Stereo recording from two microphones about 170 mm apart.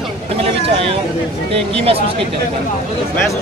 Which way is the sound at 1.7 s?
35° right (ahead or behind).